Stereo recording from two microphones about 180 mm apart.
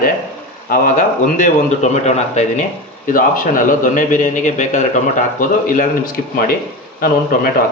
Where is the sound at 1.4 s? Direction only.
40° left (ahead or behind).